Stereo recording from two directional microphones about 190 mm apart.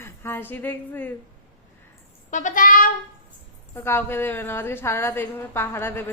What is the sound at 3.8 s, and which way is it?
A woman's voice, 10° left (ahead or behind).